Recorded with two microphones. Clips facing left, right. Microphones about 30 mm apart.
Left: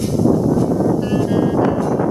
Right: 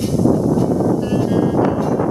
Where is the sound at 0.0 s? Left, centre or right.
Centre.